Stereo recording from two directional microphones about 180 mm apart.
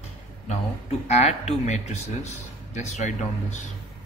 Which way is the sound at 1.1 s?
40° left (ahead or behind).